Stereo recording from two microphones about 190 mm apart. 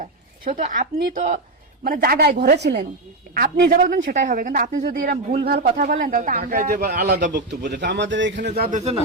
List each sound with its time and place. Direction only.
0.0 s a sound: 40° right (ahead or behind)
0.9 s a man's voice: 55° right (ahead or behind)
2.6 s a man's voice: 65° right (ahead or behind)
3.3 s speech: 50° right (ahead or behind)
7.6 s a man's voice: 65° right (ahead or behind)